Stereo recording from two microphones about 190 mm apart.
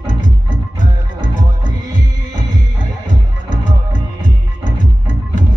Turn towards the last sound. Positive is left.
turn(degrees=40)  # may be behind; listen again after turning